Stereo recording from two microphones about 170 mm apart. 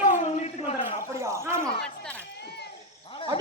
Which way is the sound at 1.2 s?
15° right (ahead or behind).